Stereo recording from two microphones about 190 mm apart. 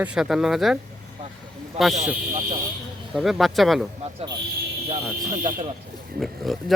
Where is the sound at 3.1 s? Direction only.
Centre (ahead or behind).